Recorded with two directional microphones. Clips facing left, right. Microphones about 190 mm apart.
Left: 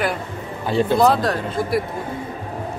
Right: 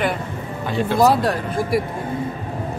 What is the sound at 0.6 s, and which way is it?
Speech, 30° left (ahead or behind).